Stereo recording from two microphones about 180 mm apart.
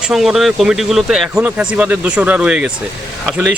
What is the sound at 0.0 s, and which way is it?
A man's voice, centre (ahead or behind).